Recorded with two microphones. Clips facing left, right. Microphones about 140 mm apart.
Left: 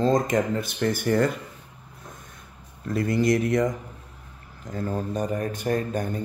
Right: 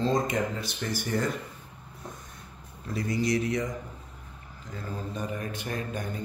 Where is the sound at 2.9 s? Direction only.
55° left (ahead or behind).